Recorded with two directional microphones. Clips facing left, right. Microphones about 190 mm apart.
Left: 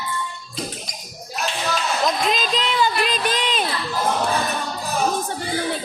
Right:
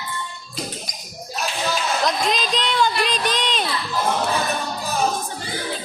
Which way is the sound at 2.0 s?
5° left (ahead or behind).